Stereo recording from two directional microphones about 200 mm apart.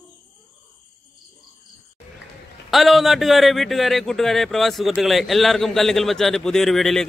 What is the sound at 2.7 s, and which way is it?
A man's voice, centre (ahead or behind).